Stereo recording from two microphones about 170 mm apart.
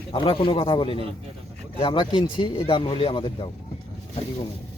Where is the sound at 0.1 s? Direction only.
30° left (ahead or behind).